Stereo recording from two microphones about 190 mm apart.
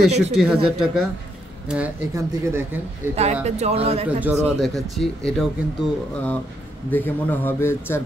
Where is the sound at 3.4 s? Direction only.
35° right (ahead or behind).